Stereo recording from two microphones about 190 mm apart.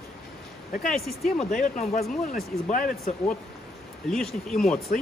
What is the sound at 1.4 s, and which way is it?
Speech, 45° left (ahead or behind).